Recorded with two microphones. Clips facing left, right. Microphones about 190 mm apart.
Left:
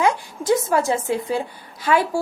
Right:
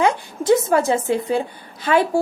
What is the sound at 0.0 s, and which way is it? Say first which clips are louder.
A woman's voice: right 2 dB; 25° right (ahead or behind).